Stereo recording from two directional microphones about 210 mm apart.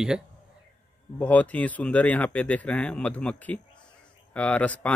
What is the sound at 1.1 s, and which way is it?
Speech, 5° left (ahead or behind).